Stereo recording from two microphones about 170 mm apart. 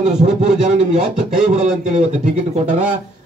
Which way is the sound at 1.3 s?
45° right (ahead or behind).